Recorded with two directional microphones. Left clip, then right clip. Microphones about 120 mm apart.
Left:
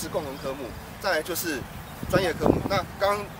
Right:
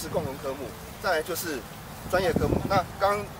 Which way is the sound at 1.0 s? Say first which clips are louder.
Left 1 dB; centre (ahead or behind).